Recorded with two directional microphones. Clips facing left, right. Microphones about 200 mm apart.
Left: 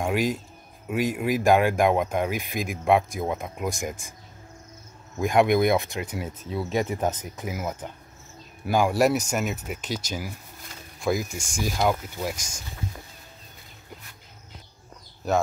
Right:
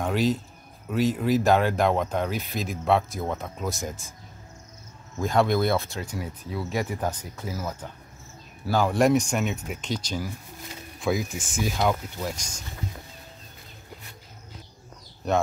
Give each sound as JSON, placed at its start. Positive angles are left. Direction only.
{"t": 0.0, "sound": "speech", "side_deg": 10}
{"t": 5.1, "sound": "speech", "side_deg": 15}
{"t": 11.9, "sound": "speech", "side_deg": 10}